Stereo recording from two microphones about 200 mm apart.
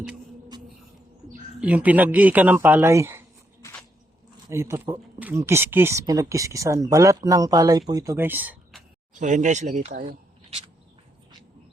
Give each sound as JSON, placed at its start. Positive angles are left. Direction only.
{"t": 1.6, "sound": "speech", "side_deg": -5}
{"t": 4.4, "sound": "speech", "side_deg": -15}
{"t": 9.1, "sound": "speech", "side_deg": -40}